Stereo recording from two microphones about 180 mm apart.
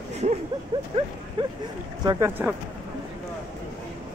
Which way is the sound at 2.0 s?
15° right (ahead or behind).